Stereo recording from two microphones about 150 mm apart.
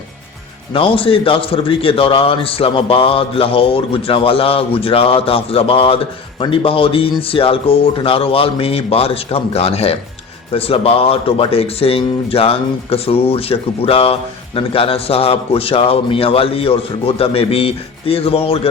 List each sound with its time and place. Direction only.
0.7 s speech: 35° left (ahead or behind)